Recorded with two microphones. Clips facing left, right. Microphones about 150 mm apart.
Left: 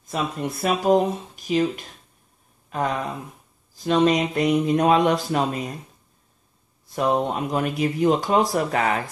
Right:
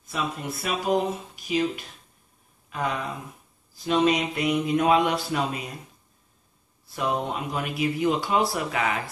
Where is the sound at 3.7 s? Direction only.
45° left (ahead or behind).